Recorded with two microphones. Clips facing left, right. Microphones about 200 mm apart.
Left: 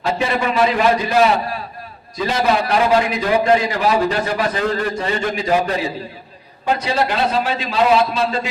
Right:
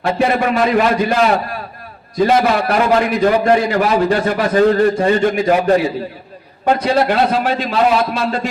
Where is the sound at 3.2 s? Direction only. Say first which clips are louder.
Right 3 dB; 55° right (ahead or behind).